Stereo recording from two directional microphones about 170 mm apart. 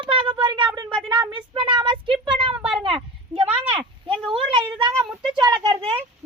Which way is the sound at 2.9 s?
35° right (ahead or behind).